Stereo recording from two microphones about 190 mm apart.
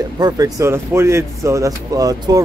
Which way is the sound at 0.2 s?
15° right (ahead or behind).